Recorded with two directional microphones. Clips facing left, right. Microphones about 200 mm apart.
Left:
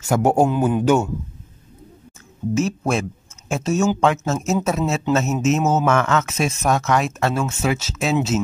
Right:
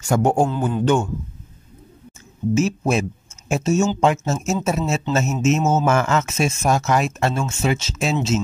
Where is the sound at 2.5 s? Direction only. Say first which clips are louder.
Right 1 dB; centre (ahead or behind).